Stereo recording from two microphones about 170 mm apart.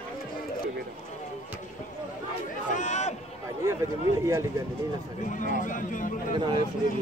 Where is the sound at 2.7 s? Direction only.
45° left (ahead or behind).